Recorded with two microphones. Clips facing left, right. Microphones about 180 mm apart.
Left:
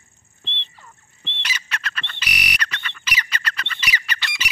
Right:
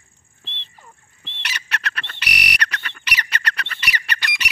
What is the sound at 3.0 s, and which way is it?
Squawk, 65° right (ahead or behind).